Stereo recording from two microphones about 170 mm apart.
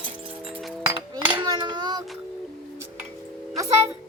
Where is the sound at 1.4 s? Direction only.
30° right (ahead or behind).